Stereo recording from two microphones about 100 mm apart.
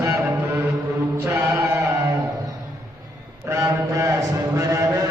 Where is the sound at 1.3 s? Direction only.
25° right (ahead or behind).